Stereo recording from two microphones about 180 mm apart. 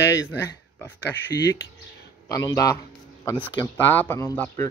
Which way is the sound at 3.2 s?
15° left (ahead or behind).